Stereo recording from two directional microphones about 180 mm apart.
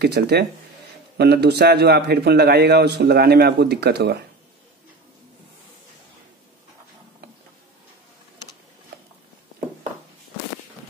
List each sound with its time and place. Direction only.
0.0 s a man's voice: 65° right (ahead or behind)